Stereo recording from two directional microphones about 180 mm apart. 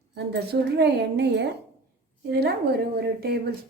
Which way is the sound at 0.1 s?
65° right (ahead or behind).